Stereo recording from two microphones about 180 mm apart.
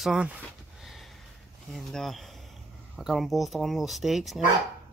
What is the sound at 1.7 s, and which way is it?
Speech, centre (ahead or behind).